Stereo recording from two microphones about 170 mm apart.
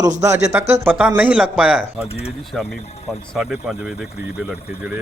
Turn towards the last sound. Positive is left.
turn(degrees=-5)  # may be behind; listen again after turning